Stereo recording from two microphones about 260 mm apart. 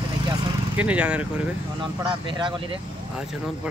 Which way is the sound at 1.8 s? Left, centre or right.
Centre.